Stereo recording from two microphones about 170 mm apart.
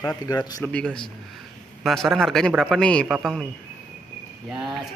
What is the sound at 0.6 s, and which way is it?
Speech, 5° left (ahead or behind).